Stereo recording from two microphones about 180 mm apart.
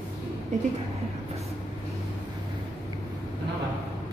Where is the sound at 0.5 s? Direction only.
40° right (ahead or behind).